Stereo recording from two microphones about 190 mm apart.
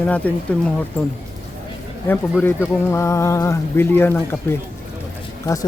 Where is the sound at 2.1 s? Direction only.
10° left (ahead or behind).